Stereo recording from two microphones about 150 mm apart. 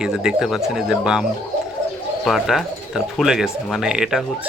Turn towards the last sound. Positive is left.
turn(degrees=-5)  # may be behind; listen again after turning